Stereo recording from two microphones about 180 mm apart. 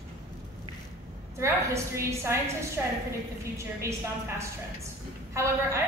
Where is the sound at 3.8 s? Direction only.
15° right (ahead or behind).